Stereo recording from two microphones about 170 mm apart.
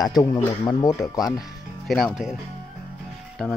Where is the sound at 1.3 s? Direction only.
Centre (ahead or behind).